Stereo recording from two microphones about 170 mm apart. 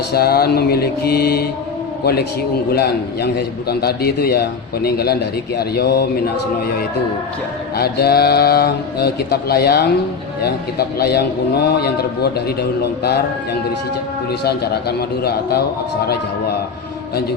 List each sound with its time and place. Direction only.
0.1 s a man's voice: 65° left (ahead or behind)
2.7 s a man's voice: 70° left (ahead or behind)
7.8 s a man's voice: 70° left (ahead or behind)
14.4 s a man's voice: 70° left (ahead or behind)